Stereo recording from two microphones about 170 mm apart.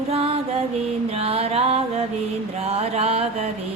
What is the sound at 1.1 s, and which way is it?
Mantra, 35° right (ahead or behind).